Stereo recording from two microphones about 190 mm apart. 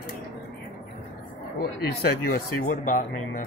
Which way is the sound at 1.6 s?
55° left (ahead or behind).